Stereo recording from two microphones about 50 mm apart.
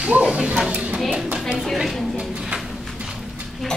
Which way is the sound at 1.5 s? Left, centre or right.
Centre.